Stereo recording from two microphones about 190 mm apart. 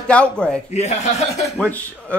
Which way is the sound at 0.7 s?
35° left (ahead or behind).